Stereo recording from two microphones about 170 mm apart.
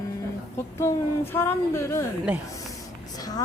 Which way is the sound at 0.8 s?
15° left (ahead or behind).